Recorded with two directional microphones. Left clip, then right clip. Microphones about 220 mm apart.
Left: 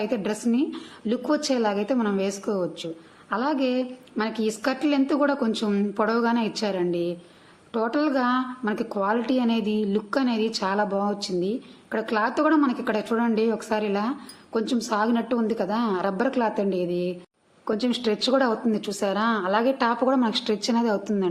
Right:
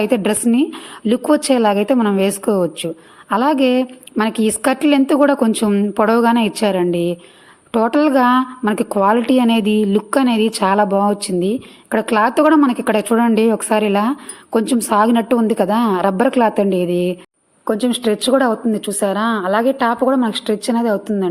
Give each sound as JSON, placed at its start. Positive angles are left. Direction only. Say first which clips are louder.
{"t": 0.0, "sound": "a woman's voice", "louder": "right 10 dB", "side_deg": -45}